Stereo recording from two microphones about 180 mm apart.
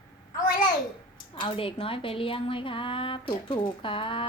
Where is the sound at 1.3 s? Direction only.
30° left (ahead or behind).